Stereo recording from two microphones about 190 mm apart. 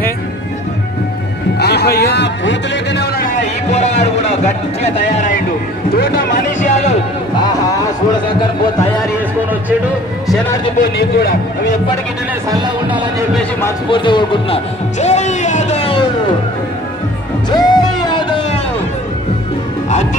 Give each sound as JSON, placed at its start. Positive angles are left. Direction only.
{"t": 1.6, "sound": "a sound", "side_deg": 60}
{"t": 3.7, "sound": "a sound", "side_deg": 35}
{"t": 5.9, "sound": "speech", "side_deg": 55}
{"t": 6.6, "sound": "a sound", "side_deg": 40}
{"t": 10.8, "sound": "a man's voice", "side_deg": 55}
{"t": 12.4, "sound": "speech", "side_deg": -20}
{"t": 13.3, "sound": "a man's voice", "side_deg": 10}
{"t": 13.8, "sound": "speech", "side_deg": 25}
{"t": 15.0, "sound": "music", "side_deg": 35}
{"t": 17.5, "sound": "music", "side_deg": 20}